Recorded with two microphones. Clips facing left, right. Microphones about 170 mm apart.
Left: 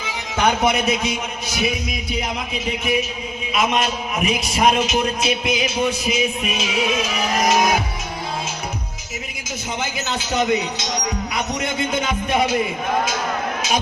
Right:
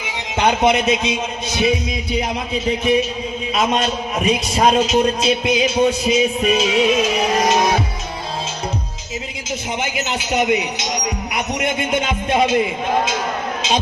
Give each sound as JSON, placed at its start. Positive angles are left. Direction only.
{"t": 0.0, "sound": "a man's voice", "side_deg": -20}
{"t": 9.8, "sound": "a man's voice", "side_deg": -20}